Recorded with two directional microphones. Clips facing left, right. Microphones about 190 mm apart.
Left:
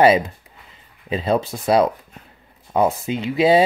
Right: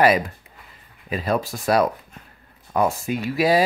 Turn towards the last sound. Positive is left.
turn(degrees=25)  # may be behind; listen again after turning